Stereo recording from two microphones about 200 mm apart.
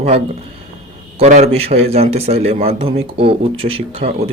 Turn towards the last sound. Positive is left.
turn(degrees=-30)  # may be behind; listen again after turning